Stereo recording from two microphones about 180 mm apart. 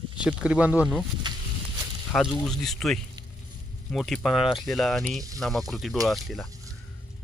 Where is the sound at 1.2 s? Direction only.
25° right (ahead or behind).